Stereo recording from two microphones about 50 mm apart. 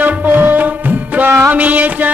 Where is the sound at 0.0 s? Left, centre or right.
Right.